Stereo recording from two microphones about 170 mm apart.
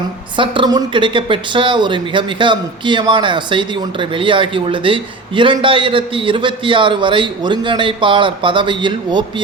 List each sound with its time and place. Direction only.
0.3 s a man's voice: 30° right (ahead or behind)